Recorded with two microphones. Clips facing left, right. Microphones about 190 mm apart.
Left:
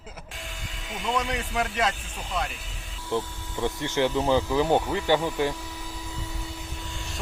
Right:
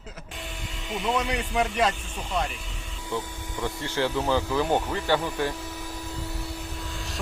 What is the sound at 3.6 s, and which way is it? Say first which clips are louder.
Speech: left 3 dB; 15° left (ahead or behind).